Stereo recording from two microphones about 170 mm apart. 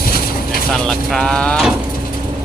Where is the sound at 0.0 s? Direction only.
60° left (ahead or behind).